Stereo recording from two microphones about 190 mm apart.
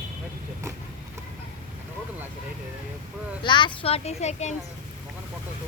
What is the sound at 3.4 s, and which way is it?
Speech, 25° left (ahead or behind).